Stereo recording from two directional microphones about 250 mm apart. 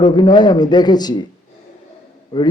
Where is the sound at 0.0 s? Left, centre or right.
Centre.